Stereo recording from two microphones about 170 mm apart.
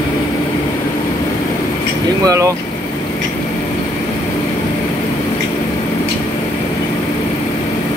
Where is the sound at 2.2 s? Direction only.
20° right (ahead or behind).